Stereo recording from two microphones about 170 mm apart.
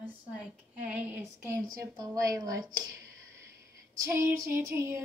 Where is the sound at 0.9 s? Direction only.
10° right (ahead or behind).